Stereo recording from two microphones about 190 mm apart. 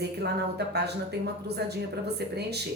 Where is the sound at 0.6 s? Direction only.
60° right (ahead or behind).